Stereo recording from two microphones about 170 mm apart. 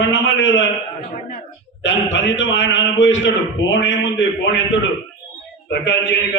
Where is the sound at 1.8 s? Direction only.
90° left.